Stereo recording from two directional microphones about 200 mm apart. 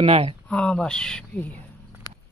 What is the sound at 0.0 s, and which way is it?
Speech, 30° right (ahead or behind).